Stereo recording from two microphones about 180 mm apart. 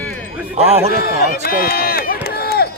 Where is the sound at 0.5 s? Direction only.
35° right (ahead or behind).